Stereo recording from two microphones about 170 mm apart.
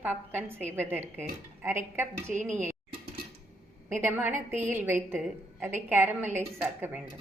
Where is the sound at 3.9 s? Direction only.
10° right (ahead or behind).